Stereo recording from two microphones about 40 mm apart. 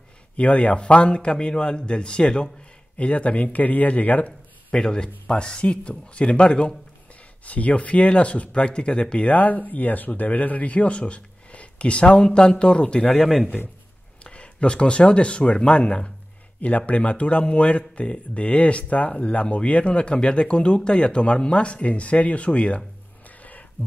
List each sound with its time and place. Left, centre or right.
0.4 s a man's voice: left
4.7 s a man's voice: left
7.4 s speech: left
9.3 s a man's voice: left
13.2 s a man's voice: centre
14.2 s speech: left
16.6 s speech: left
23.2 s music: left